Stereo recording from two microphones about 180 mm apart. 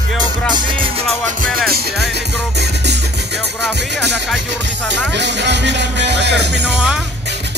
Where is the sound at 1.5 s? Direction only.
60° right (ahead or behind).